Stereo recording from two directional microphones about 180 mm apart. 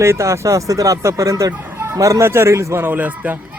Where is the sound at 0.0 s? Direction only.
15° right (ahead or behind).